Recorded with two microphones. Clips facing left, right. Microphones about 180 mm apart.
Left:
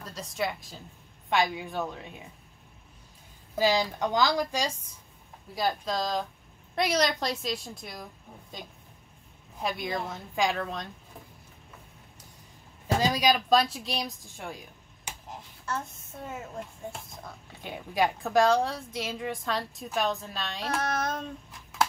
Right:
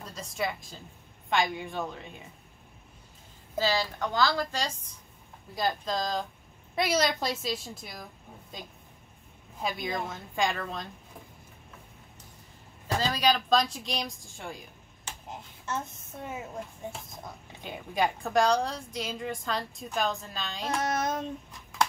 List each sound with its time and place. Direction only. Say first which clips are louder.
0.0 s a woman's voice: left 1 dB; centre (ahead or behind)
3.5 s a woman's voice: left 3 dB; 15° left (ahead or behind); by 10.9 s centre (ahead or behind)
12.8 s a woman's voice: left 2 dB; 15° left (ahead or behind)
16.3 s a woman's voice: even; centre (ahead or behind)
20.8 s child singing: right 2 dB; 20° right (ahead or behind)
21.5 s a sound: left 2 dB; centre (ahead or behind)